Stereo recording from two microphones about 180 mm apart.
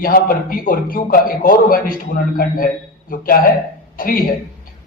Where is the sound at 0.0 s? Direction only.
50° left (ahead or behind).